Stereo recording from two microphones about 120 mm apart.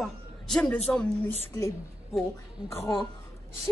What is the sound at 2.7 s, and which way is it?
Speech, 20° left (ahead or behind).